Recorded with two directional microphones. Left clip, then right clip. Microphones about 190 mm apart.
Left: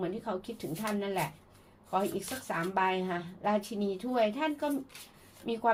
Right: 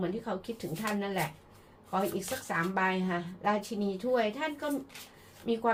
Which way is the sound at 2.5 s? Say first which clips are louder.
Even; 35° left (ahead or behind).